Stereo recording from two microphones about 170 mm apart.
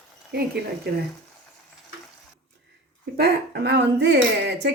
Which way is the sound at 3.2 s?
70° right (ahead or behind).